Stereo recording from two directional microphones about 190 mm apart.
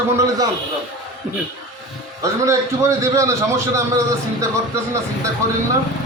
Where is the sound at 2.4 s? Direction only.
15° right (ahead or behind).